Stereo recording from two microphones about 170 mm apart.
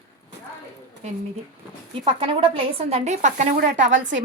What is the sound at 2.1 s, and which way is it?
A woman's voice, 30° right (ahead or behind).